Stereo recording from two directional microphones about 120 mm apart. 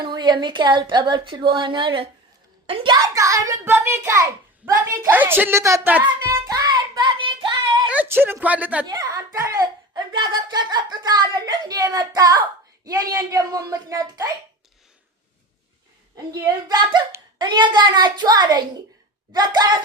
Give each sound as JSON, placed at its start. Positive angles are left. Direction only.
{"t": 0.0, "sound": "a child's voice", "side_deg": -40}
{"t": 6.6, "sound": "child singing", "side_deg": -35}
{"t": 7.9, "sound": "a woman's voice", "side_deg": -15}
{"t": 8.9, "sound": "speech", "side_deg": -30}
{"t": 16.1, "sound": "speech", "side_deg": -35}